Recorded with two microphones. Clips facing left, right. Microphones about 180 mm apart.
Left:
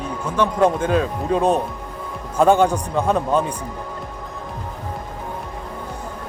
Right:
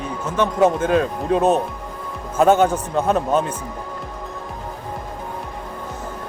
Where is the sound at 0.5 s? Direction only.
5° right (ahead or behind).